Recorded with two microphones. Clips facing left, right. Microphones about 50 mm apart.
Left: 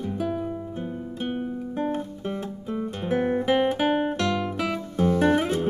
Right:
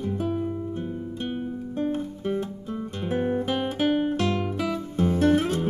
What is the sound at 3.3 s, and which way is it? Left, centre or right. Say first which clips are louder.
Guitar: left 4 dB; left.